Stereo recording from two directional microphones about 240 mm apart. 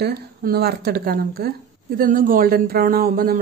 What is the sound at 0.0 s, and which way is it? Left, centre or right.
A woman's voice, right.